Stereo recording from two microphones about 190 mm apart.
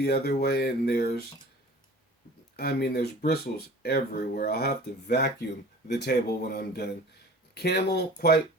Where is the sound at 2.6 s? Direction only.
55° left (ahead or behind).